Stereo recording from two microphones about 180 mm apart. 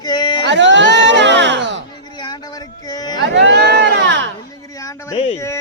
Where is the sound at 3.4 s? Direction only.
70° right (ahead or behind).